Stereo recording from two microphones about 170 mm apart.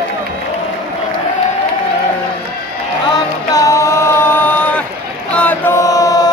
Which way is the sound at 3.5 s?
20° left (ahead or behind).